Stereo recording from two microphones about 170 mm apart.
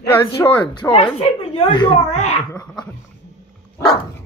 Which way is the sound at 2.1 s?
40° left (ahead or behind).